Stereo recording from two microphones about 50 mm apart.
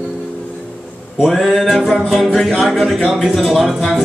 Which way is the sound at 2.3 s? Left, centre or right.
Centre.